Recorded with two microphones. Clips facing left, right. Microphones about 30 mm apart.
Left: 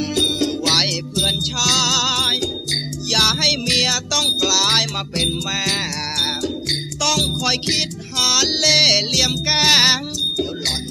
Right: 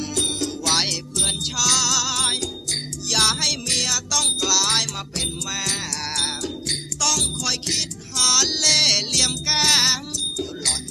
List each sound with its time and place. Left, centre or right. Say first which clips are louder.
0.0 s music: left 6 dB; left
1.1 s music: left 7 dB; centre
6.1 s music: left 6 dB; centre
8.3 s music: left 3 dB; centre